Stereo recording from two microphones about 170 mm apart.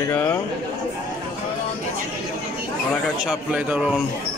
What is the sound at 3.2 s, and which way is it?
Speech, 5° right (ahead or behind).